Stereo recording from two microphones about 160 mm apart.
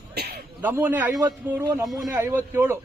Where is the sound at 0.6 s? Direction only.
10° right (ahead or behind).